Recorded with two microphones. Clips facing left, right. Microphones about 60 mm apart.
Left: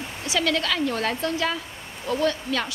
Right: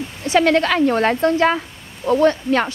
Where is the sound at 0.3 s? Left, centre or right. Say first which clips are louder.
Right 9 dB; right.